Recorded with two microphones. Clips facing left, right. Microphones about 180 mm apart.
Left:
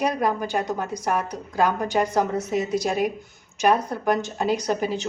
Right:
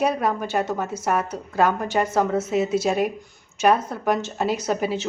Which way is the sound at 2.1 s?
15° left (ahead or behind).